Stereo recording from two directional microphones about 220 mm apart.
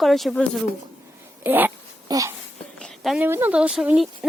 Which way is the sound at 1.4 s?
10° right (ahead or behind).